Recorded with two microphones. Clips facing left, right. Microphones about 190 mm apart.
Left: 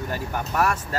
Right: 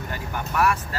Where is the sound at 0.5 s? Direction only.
40° left (ahead or behind).